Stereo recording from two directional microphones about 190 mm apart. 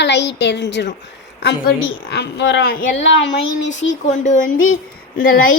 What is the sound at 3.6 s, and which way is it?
Speech, 75° left (ahead or behind).